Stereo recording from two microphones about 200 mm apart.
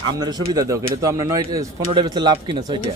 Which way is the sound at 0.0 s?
20° right (ahead or behind).